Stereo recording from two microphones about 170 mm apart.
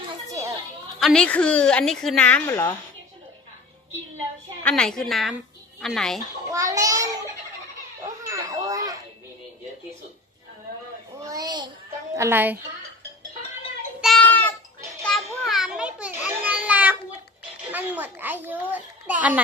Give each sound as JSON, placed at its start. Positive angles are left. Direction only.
{"t": 0.9, "sound": "a woman's voice", "side_deg": 5}
{"t": 4.6, "sound": "a woman's voice", "side_deg": 5}
{"t": 6.5, "sound": "a child's voice", "side_deg": -20}
{"t": 8.0, "sound": "music", "side_deg": -20}
{"t": 11.2, "sound": "a sound", "side_deg": -20}
{"t": 12.2, "sound": "a woman's voice", "side_deg": -10}
{"t": 14.0, "sound": "child singing", "side_deg": 5}
{"t": 15.0, "sound": "children playing", "side_deg": 0}
{"t": 17.6, "sound": "a child's voice", "side_deg": -10}